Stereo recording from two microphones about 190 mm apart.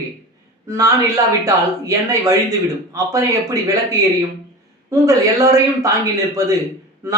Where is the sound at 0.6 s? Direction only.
20° right (ahead or behind).